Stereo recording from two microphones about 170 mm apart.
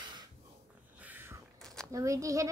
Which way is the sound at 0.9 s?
10° right (ahead or behind).